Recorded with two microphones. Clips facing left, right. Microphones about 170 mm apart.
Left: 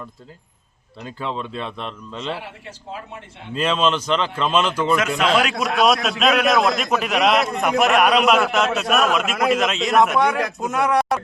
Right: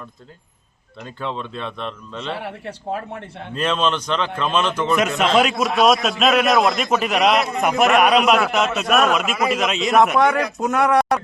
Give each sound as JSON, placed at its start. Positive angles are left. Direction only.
{"t": 1.0, "sound": "a man's voice", "side_deg": 0}
{"t": 2.4, "sound": "a man's voice", "side_deg": -60}
{"t": 3.5, "sound": "a man's voice", "side_deg": 5}
{"t": 4.4, "sound": "a man's voice", "side_deg": -10}